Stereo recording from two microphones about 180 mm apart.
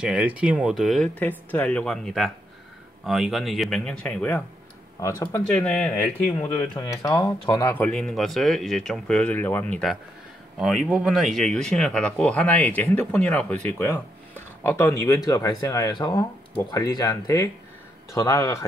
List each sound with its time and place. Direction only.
0.0 s speech: 5° right (ahead or behind)
5.0 s speech: 15° left (ahead or behind)
5.5 s speech: 5° left (ahead or behind)